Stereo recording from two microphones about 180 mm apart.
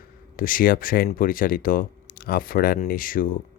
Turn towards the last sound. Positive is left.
turn(degrees=50)  # may be behind; listen again after turning